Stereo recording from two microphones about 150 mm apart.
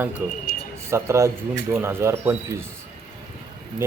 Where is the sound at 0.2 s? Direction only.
15° right (ahead or behind).